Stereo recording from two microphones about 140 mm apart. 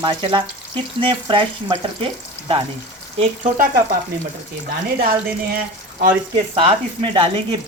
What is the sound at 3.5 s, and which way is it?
Speech, 90° right.